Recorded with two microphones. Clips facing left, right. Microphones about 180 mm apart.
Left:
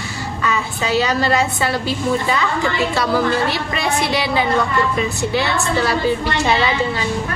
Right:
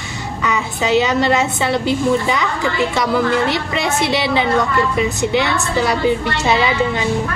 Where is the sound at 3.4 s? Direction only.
20° right (ahead or behind).